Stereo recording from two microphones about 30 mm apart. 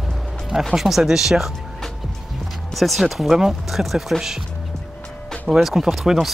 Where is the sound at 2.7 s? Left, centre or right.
Centre.